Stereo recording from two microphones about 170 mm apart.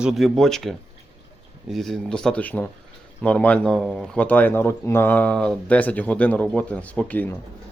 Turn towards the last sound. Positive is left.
turn(degrees=10)  # may be behind; listen again after turning